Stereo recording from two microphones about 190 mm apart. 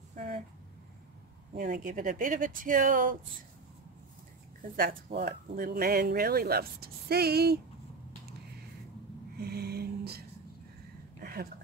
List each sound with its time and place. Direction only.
1.5 s speech: 50° right (ahead or behind)
4.6 s speech: 50° right (ahead or behind)
9.4 s a sound: 55° right (ahead or behind)